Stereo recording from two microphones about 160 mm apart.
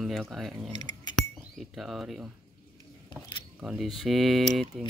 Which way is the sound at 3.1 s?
30° left (ahead or behind).